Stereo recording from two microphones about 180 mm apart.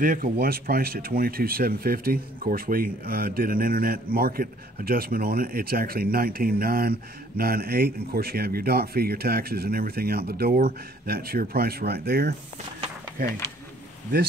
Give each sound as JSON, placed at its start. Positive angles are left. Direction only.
{"t": 0.0, "sound": "speech", "side_deg": -50}